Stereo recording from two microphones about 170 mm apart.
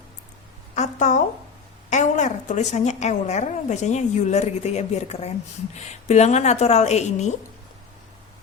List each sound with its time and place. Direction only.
0.8 s a woman's voice: 45° left (ahead or behind)